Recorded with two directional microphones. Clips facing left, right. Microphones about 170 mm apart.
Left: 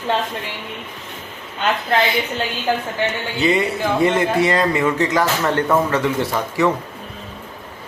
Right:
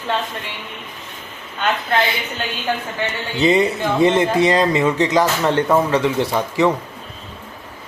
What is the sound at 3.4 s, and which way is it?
A man's voice, 25° right (ahead or behind).